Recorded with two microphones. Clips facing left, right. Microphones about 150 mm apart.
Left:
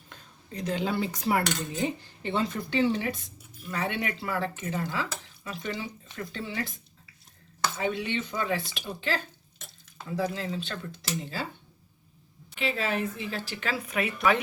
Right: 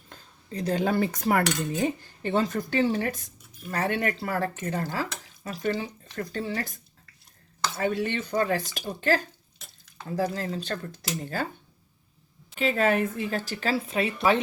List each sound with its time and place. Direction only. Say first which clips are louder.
0.1 s speech: right 5 dB; 35° right (ahead or behind)
7.8 s speech: right 4 dB; 45° right (ahead or behind)
12.5 s a woman's voice: right 6 dB; 45° right (ahead or behind); by 14.4 s 30° right (ahead or behind)